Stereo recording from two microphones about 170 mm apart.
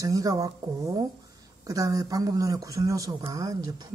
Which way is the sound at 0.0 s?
20° right (ahead or behind).